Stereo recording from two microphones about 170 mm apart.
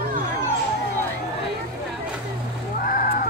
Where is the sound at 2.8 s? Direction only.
55° left (ahead or behind).